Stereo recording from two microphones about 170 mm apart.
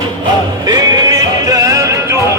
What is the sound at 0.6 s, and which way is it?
Music, 25° right (ahead or behind).